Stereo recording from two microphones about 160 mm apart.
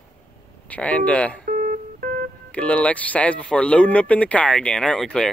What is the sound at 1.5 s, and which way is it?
Music, 60° right (ahead or behind).